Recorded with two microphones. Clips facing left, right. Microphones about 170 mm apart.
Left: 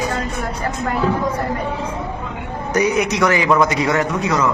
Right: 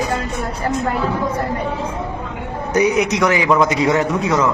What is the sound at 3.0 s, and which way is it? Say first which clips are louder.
A man's voice: right 1 dB; 15° right (ahead or behind).